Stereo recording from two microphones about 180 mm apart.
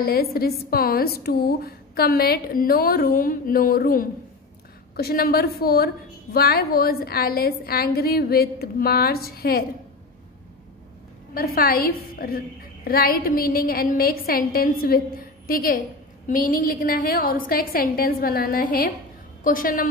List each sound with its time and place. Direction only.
0.0 s a woman's voice: 55° left (ahead or behind)
11.3 s a woman's voice: 55° left (ahead or behind)